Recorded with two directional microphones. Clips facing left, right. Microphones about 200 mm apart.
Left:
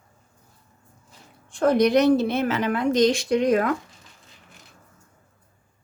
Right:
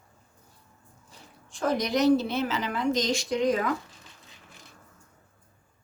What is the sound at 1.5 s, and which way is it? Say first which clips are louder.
A woman's voice: left 8 dB; 60° left (ahead or behind).